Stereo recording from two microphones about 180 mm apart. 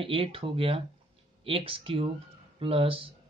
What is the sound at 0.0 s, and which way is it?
Speech, 30° right (ahead or behind).